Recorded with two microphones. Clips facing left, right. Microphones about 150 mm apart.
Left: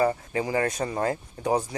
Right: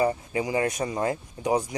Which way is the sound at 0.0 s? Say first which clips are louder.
Even; 15° right (ahead or behind).